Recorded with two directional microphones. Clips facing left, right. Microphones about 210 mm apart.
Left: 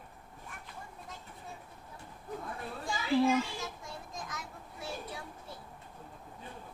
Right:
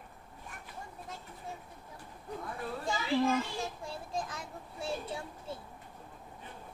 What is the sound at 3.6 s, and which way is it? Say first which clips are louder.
Children playing: right 4 dB; 30° right (ahead or behind).